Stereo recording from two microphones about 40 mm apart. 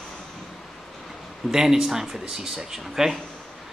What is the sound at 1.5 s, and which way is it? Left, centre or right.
Speech, centre.